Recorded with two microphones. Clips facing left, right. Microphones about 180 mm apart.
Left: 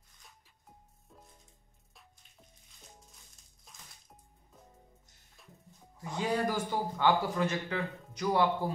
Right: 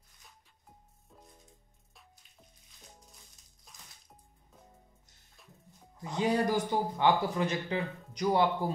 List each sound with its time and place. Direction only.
3.7 s music: centre (ahead or behind)
5.4 s music: centre (ahead or behind)
6.1 s a man's voice: 20° right (ahead or behind)